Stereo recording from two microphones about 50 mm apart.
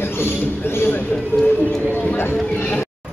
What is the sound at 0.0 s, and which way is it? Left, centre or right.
A man's voice, left.